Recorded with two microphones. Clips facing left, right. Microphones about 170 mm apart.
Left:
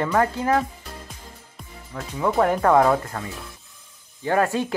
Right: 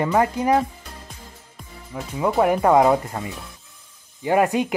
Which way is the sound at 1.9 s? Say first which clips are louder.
Right 1 dB; 15° right (ahead or behind).